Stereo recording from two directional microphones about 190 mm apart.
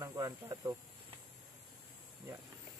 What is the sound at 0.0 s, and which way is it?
Speech, 20° right (ahead or behind).